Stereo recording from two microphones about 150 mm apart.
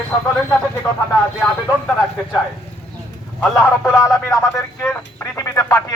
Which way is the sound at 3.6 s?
5° right (ahead or behind).